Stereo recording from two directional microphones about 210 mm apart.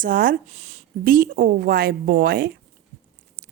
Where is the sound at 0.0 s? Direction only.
40° right (ahead or behind).